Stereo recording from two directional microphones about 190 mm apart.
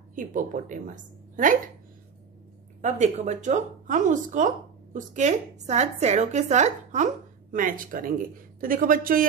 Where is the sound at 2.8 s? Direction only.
40° right (ahead or behind).